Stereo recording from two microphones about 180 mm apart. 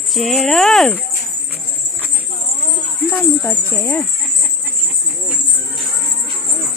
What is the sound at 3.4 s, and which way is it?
Speech, 15° left (ahead or behind).